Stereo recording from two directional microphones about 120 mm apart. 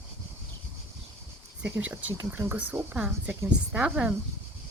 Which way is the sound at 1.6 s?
10° right (ahead or behind).